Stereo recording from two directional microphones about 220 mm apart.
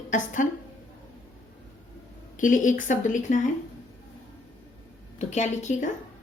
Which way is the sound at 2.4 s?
35° left (ahead or behind).